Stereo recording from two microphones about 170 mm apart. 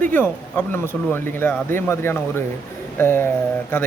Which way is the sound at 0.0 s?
10° left (ahead or behind).